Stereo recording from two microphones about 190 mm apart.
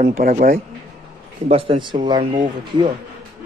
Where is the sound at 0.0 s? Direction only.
50° right (ahead or behind).